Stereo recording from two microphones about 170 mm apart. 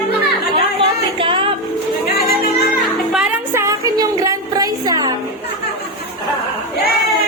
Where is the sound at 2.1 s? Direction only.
70° left (ahead or behind).